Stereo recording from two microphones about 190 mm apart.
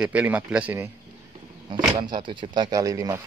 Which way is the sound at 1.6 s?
25° right (ahead or behind).